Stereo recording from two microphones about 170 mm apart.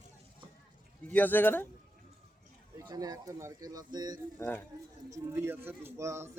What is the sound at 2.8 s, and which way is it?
Speech, 25° right (ahead or behind).